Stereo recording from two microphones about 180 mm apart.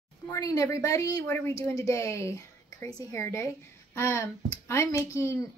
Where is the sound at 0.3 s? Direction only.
20° left (ahead or behind).